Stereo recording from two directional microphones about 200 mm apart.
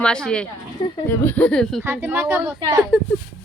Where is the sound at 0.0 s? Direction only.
5° left (ahead or behind).